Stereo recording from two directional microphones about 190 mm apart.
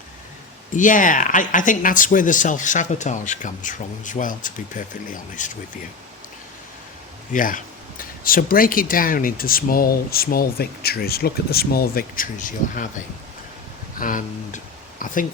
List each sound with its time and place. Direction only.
0.7 s speech: 45° left (ahead or behind)
7.3 s speech: 45° left (ahead or behind)
14.0 s speech: 45° left (ahead or behind)